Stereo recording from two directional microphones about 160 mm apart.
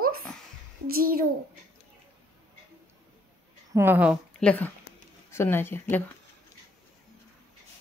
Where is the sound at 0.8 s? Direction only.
65° right (ahead or behind).